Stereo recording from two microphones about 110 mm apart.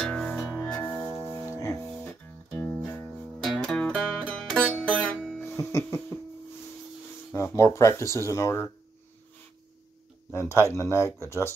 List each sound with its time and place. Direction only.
0.0 s music: 5° left (ahead or behind)
1.2 s music: 25° left (ahead or behind)
3.1 s music: 5° right (ahead or behind)
3.6 s music: 10° left (ahead or behind)
5.6 s music: 25° left (ahead or behind)
7.3 s speech: 25° left (ahead or behind)
10.3 s speech: 25° left (ahead or behind)